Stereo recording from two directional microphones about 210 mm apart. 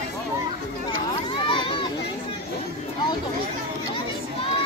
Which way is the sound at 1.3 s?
25° left (ahead or behind).